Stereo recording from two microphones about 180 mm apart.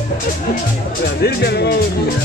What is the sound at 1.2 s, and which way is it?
Speech, 65° left (ahead or behind).